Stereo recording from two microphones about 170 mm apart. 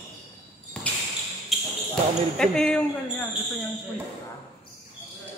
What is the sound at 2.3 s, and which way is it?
Speech, 5° left (ahead or behind).